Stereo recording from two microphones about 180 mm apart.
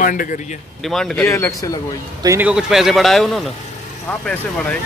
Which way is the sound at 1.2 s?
15° left (ahead or behind).